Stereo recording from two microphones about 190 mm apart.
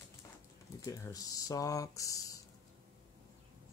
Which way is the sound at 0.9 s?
20° left (ahead or behind).